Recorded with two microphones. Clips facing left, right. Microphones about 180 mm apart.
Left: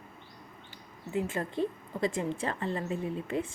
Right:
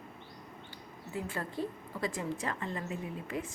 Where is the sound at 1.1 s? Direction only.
20° left (ahead or behind).